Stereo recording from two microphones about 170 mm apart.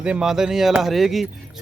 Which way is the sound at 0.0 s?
5° right (ahead or behind).